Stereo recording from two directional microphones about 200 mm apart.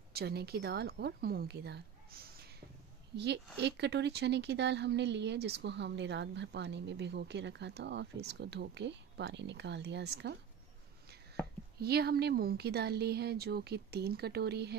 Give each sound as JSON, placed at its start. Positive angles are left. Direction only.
{"t": 0.1, "sound": "speech", "side_deg": -50}
{"t": 3.6, "sound": "speech", "side_deg": -60}
{"t": 11.8, "sound": "speech", "side_deg": -50}